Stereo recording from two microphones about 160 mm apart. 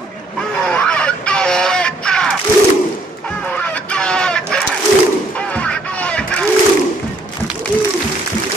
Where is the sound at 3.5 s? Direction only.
10° left (ahead or behind).